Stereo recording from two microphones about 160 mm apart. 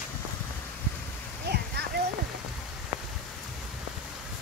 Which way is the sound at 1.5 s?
90° right.